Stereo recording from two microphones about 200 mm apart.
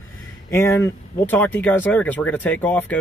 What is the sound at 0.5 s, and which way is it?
Speech, 10° left (ahead or behind).